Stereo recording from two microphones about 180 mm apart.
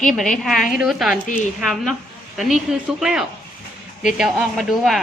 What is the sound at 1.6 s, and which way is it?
Speech, centre (ahead or behind).